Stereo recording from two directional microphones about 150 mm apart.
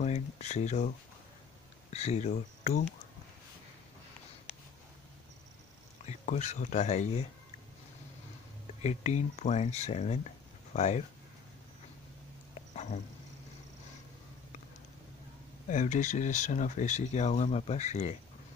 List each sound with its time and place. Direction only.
0.0 s a sound: 50° left (ahead or behind)
1.9 s speech: 45° left (ahead or behind)
6.0 s speech: 50° left (ahead or behind)
8.8 s speech: 50° left (ahead or behind)
12.7 s dog: 55° left (ahead or behind)
15.7 s speech: 55° left (ahead or behind)